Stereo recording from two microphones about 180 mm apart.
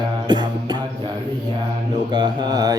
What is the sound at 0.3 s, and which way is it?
Music, 25° right (ahead or behind).